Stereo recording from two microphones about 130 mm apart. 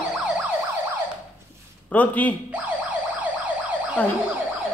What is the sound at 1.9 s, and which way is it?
Speech, 10° left (ahead or behind).